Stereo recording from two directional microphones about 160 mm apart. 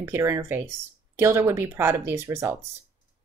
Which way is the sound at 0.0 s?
15° right (ahead or behind).